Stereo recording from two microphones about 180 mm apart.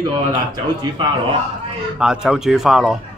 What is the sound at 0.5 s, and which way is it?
Speech, 25° right (ahead or behind).